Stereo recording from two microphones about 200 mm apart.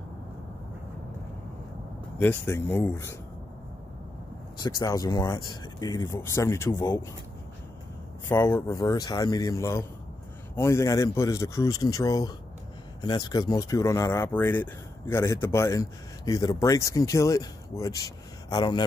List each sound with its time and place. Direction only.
2.1 s speech: 10° left (ahead or behind)
4.6 s speech: 20° left (ahead or behind)
8.3 s speech: 10° left (ahead or behind)